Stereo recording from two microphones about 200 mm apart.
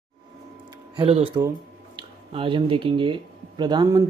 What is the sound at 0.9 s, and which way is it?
Speech, 30° right (ahead or behind).